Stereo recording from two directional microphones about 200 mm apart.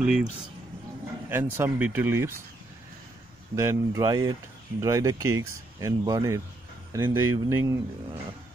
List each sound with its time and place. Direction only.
0.0 s speech: 5° right (ahead or behind)
1.3 s speech: 10° right (ahead or behind)
3.5 s speech: 15° right (ahead or behind)